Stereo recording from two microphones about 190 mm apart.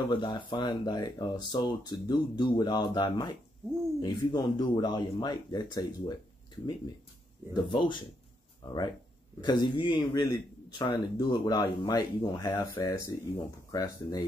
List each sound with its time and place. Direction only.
0.1 s a man's voice: 25° left (ahead or behind)
7.6 s a man's voice: 25° left (ahead or behind)
9.4 s a man's voice: 20° left (ahead or behind)